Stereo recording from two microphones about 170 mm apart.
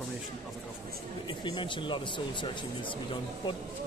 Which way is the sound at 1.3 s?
30° left (ahead or behind).